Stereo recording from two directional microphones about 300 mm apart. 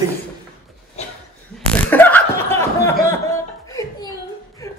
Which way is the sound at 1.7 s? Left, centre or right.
Centre.